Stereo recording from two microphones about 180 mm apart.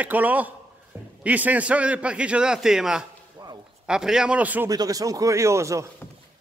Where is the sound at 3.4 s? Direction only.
25° right (ahead or behind).